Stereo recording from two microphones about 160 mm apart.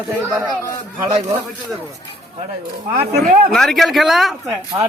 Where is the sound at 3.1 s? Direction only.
50° right (ahead or behind).